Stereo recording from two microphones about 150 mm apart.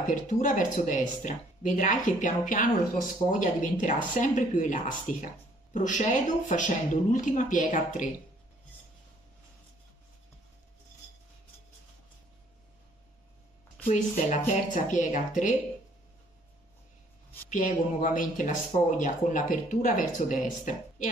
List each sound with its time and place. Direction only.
0.1 s speech: 55° left (ahead or behind)
13.8 s speech: 50° left (ahead or behind)
17.5 s speech: 60° left (ahead or behind)